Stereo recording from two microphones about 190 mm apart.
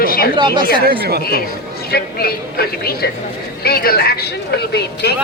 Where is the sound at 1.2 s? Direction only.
55° left (ahead or behind).